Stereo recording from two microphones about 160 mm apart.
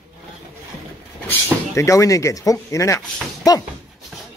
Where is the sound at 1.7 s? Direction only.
20° left (ahead or behind).